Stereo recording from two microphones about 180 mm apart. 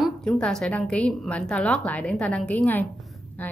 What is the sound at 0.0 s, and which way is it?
A woman's voice, 5° left (ahead or behind).